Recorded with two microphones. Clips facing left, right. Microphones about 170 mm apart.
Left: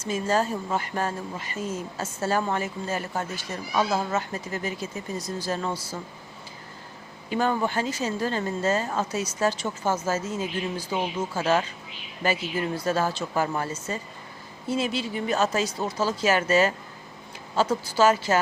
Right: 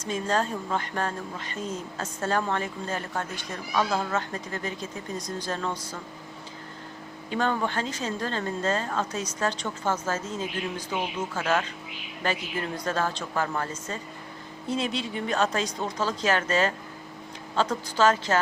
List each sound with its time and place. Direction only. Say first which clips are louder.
0.0 s speech: left 2 dB; 5° left (ahead or behind)
7.3 s speech: left 2 dB; 5° left (ahead or behind)